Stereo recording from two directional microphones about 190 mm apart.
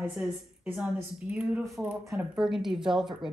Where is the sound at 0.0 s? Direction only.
5° right (ahead or behind).